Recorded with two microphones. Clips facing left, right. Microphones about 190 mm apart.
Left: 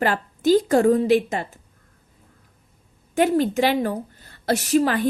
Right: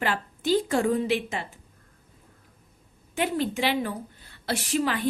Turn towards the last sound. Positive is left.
turn(degrees=45)  # may be behind; listen again after turning